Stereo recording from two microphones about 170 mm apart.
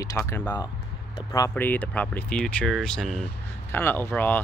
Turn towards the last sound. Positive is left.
turn(degrees=10)  # may be behind; listen again after turning